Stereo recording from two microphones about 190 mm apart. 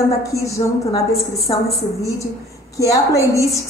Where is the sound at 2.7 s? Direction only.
15° left (ahead or behind).